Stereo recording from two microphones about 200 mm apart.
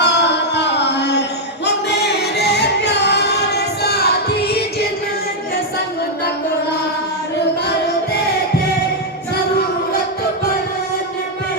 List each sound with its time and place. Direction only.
0.0 s music: 60° left (ahead or behind)